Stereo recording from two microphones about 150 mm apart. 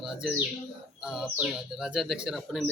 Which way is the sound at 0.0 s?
5° right (ahead or behind).